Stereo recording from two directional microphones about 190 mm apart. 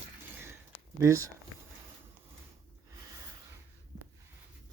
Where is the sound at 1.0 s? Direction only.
15° right (ahead or behind).